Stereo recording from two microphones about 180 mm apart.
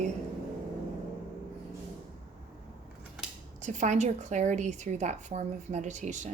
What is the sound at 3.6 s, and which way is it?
A woman's voice, 40° right (ahead or behind).